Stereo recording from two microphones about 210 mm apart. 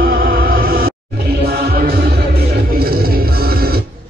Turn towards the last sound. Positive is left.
turn(degrees=-45)  # may be behind; listen again after turning